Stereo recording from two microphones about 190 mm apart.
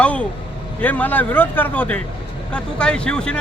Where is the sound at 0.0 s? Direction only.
5° left (ahead or behind).